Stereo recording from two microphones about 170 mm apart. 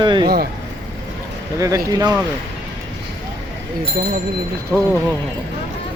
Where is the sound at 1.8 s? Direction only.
20° right (ahead or behind).